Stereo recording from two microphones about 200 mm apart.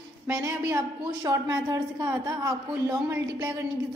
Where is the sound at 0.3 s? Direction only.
15° right (ahead or behind).